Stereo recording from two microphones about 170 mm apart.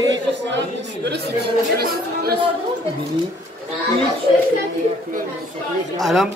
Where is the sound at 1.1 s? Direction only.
70° right (ahead or behind).